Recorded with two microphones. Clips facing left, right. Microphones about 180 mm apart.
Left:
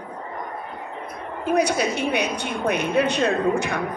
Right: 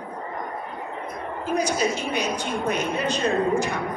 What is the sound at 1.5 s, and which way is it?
A woman's voice, 65° left (ahead or behind).